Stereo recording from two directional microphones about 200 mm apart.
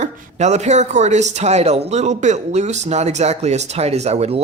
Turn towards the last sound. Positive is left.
turn(degrees=-30)  # may be behind; listen again after turning